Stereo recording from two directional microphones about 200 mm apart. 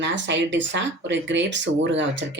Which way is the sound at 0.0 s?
65° right (ahead or behind).